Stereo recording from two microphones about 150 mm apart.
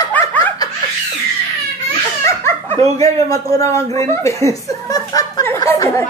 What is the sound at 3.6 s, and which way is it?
A child's voice, 20° left (ahead or behind).